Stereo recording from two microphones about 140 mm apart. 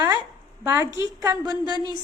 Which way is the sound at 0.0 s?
30° right (ahead or behind).